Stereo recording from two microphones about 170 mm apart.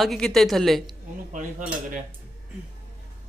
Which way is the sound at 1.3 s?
50° right (ahead or behind).